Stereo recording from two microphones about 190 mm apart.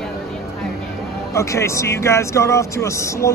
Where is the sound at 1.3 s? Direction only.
15° left (ahead or behind).